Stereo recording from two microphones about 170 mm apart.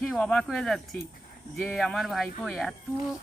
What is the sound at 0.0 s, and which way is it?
Speech, 5° left (ahead or behind).